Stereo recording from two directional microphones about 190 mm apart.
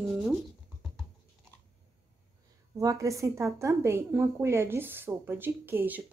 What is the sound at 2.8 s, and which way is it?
A woman's voice, 15° right (ahead or behind).